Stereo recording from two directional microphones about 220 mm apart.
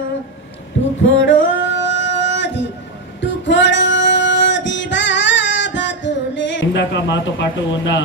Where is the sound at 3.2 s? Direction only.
55° left (ahead or behind).